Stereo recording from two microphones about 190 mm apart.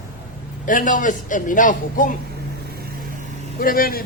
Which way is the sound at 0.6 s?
45° left (ahead or behind).